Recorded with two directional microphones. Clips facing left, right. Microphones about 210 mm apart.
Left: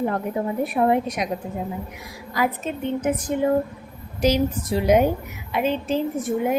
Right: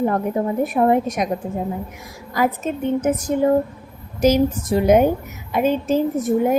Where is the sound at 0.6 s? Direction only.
45° right (ahead or behind).